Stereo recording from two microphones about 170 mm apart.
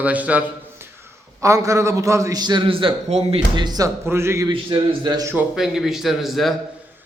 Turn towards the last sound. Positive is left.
turn(degrees=0)  # may be behind; listen again after turning